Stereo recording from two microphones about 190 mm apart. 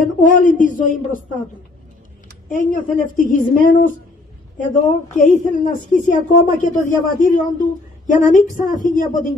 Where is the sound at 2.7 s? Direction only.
45° left (ahead or behind).